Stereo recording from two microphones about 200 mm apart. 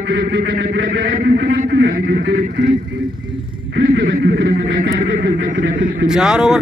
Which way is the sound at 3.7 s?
55° right (ahead or behind).